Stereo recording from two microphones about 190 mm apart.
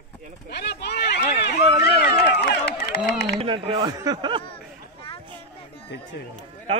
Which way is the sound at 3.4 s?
30° right (ahead or behind).